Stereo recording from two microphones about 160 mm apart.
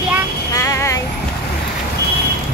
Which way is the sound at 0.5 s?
20° left (ahead or behind).